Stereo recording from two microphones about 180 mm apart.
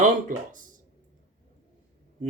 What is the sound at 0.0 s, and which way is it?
Speech, 45° right (ahead or behind).